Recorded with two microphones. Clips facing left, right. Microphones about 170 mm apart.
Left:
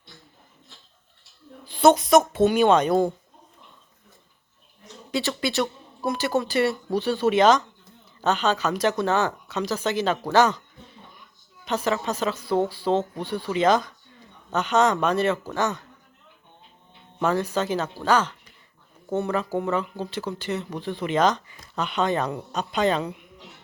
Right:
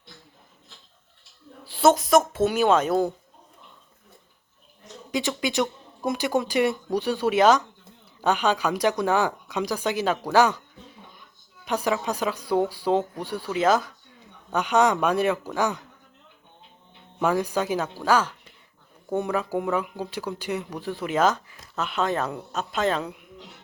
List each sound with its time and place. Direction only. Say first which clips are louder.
1.6 s a woman's voice: left 2 dB; centre (ahead or behind)
5.1 s speech: even; 15° right (ahead or behind)
10.3 s a sound: even; 10° right (ahead or behind)
11.6 s speech: even; 10° right (ahead or behind)
17.2 s speech: even; 10° right (ahead or behind)